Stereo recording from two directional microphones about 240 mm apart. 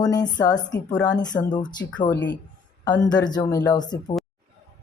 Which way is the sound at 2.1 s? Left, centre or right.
Left.